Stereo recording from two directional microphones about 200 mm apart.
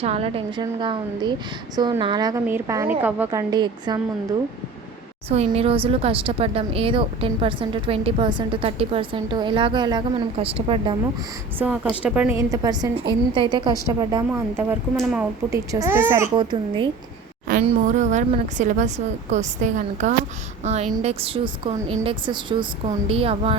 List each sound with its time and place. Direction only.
0.0 s a woman's voice: 30° right (ahead or behind); by 3.4 s 10° right (ahead or behind)
3.5 s a woman's voice: 20° right (ahead or behind)
5.3 s a woman's voice: 30° right (ahead or behind)
11.6 s speech: 5° right (ahead or behind)
12.4 s a woman's voice: 20° right (ahead or behind)
15.4 s a child's voice: 15° right (ahead or behind)
17.7 s a woman's voice: 35° right (ahead or behind)